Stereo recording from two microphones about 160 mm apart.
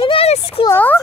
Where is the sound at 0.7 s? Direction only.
10° left (ahead or behind).